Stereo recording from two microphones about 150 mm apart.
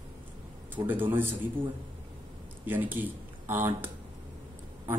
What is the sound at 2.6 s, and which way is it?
Speech, 10° right (ahead or behind).